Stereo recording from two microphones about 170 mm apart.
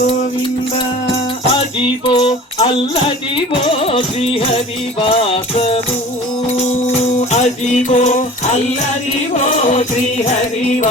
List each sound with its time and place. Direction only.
1.1 s music: 30° left (ahead or behind)
7.3 s music: 40° left (ahead or behind)